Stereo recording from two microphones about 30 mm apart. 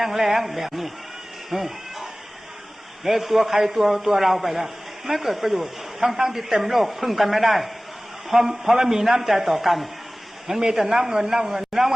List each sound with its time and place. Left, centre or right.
0.0 s a man's voice: centre
1.5 s cat: centre
3.0 s a man's voice: centre
8.3 s a man's voice: centre
10.5 s a man's voice: centre